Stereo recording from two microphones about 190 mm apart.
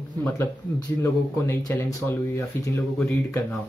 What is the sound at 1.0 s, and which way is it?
Speech, 15° left (ahead or behind).